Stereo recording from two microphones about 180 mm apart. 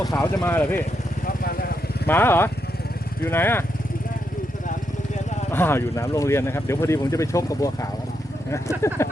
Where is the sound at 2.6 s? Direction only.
60° left (ahead or behind).